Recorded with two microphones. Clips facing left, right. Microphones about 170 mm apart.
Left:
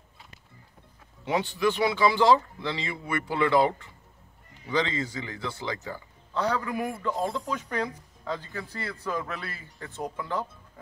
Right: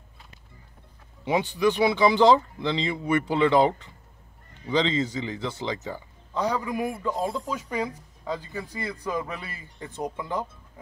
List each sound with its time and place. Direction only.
1.2 s speech: 15° right (ahead or behind)